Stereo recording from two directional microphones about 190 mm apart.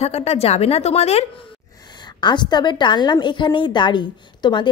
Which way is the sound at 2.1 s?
25° left (ahead or behind).